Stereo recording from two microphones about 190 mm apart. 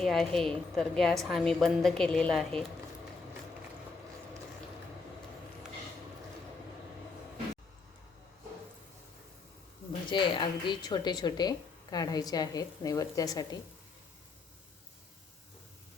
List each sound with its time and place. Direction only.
0.0 s a woman's voice: centre (ahead or behind)
10.1 s a woman's voice: 25° left (ahead or behind)